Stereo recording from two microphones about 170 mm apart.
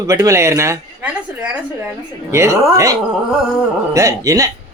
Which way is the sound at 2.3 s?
15° right (ahead or behind).